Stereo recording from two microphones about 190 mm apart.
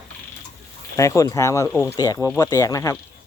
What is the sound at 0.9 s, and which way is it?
Speech, 15° left (ahead or behind).